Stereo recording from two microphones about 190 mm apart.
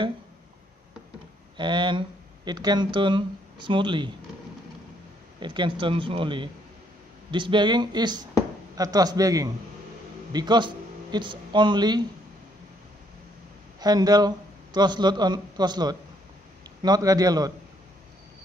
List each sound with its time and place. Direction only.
1.6 s speech: 25° right (ahead or behind)
5.4 s speech: 25° right (ahead or behind)
13.7 s a man's voice: 20° right (ahead or behind)